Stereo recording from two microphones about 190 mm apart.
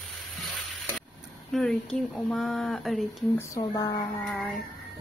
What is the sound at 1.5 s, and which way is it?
Speech, centre (ahead or behind).